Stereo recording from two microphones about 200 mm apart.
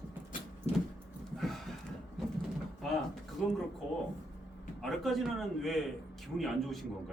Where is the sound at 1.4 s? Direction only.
Centre (ahead or behind).